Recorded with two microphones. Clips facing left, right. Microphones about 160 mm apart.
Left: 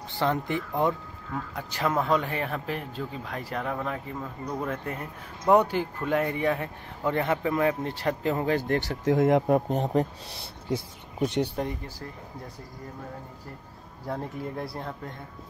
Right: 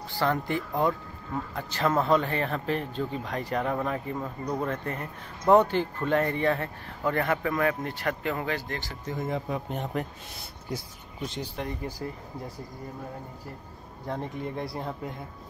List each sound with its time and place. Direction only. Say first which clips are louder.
0.2 s speech: even; 20° left (ahead or behind); by 4.3 s 5° right (ahead or behind)
4.6 s speech: right 1 dB; 10° left (ahead or behind); by 8.5 s 35° left (ahead or behind)
8.5 s speech: left 9 dB; 60° left (ahead or behind); by 9.6 s 80° left
9.7 s speech: left 6 dB; 35° left (ahead or behind)
11.1 s speech: left 9 dB; 65° left (ahead or behind)
14.0 s speech: even; 5° left (ahead or behind)